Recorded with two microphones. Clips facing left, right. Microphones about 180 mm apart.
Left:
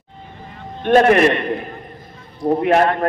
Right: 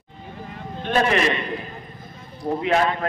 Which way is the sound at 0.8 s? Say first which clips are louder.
Left 8 dB; 55° left (ahead or behind).